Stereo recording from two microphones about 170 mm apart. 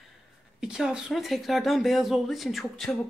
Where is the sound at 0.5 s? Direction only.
5° right (ahead or behind).